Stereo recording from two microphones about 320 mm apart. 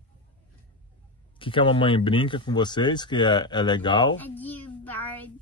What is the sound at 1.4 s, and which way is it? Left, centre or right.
Speech, centre.